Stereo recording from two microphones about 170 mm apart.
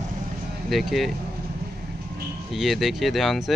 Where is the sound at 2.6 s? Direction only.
Centre (ahead or behind).